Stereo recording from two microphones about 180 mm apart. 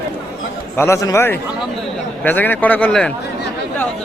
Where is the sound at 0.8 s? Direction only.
15° left (ahead or behind).